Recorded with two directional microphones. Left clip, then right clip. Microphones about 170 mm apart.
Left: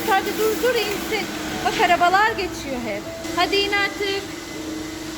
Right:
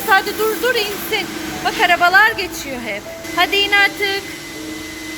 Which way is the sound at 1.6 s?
10° left (ahead or behind).